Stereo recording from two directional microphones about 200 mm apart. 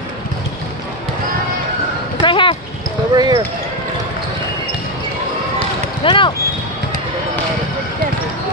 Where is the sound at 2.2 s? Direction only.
25° left (ahead or behind).